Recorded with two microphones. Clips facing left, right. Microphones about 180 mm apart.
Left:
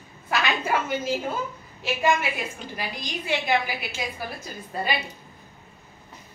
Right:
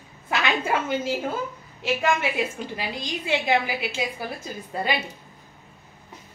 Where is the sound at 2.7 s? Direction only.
20° right (ahead or behind).